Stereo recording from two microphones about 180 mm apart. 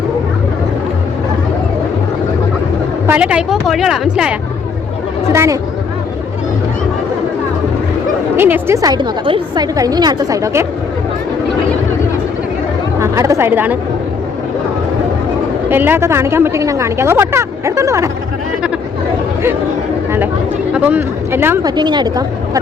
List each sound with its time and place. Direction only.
3.1 s a woman's voice: 5° right (ahead or behind)
5.3 s speech: 15° right (ahead or behind)
8.4 s a woman's voice: 10° right (ahead or behind)
13.0 s speech: 15° right (ahead or behind)
15.7 s speech: 10° right (ahead or behind)
20.7 s speech: 10° right (ahead or behind)
21.8 s a woman's voice: 25° right (ahead or behind)